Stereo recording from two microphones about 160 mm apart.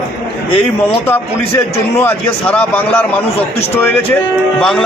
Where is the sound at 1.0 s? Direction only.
15° left (ahead or behind).